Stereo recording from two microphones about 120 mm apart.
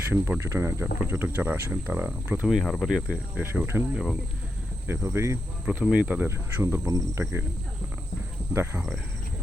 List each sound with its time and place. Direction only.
0.1 s speech: 20° right (ahead or behind)
2.6 s cricket: 5° left (ahead or behind)
2.9 s insect: 10° right (ahead or behind)
3.9 s cricket: centre (ahead or behind)
4.9 s speech: 20° right (ahead or behind)
5.6 s speech: 5° right (ahead or behind); by 7.4 s 25° right (ahead or behind)
8.5 s speech: 20° right (ahead or behind)